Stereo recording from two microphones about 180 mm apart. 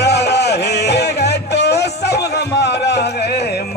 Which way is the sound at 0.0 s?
70° left (ahead or behind).